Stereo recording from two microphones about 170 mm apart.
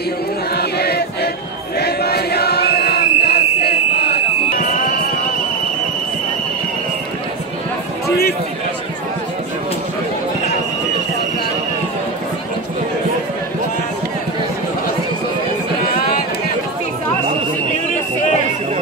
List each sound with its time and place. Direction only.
0.6 s choir: 70° left (ahead or behind)
1.8 s chant: 70° left (ahead or behind)